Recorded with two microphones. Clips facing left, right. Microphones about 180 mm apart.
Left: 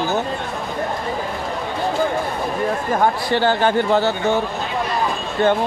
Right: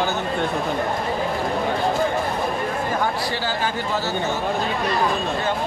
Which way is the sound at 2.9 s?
60° left (ahead or behind).